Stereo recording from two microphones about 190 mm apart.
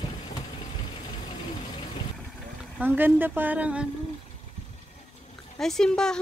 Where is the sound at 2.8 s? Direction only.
10° right (ahead or behind).